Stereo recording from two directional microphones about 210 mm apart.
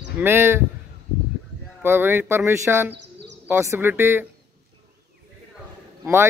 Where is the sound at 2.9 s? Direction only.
55° right (ahead or behind).